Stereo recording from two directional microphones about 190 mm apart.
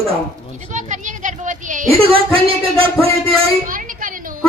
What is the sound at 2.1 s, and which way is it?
Speech, 30° right (ahead or behind).